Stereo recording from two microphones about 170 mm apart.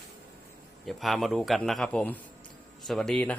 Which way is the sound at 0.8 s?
Centre (ahead or behind).